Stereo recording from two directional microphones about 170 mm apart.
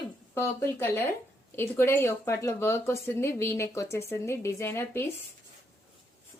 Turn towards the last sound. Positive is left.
turn(degrees=15)  # may be behind; listen again after turning